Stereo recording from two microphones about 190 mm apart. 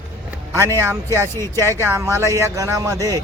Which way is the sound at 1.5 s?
15° right (ahead or behind).